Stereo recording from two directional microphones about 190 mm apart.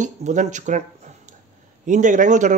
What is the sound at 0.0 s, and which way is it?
Speech, 40° right (ahead or behind).